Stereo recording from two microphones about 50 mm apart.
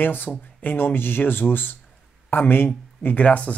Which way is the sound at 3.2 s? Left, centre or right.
Left.